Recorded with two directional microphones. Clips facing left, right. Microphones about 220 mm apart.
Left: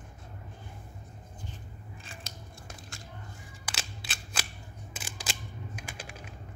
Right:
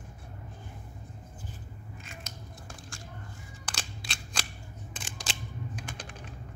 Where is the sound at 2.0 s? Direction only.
30° left (ahead or behind).